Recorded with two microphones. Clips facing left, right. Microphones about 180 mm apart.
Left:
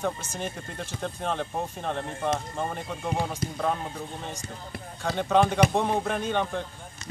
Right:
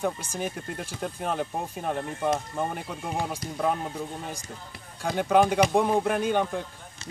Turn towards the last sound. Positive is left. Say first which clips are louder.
# right 2 dB
turn(degrees=-10)  # may be behind; listen again after turning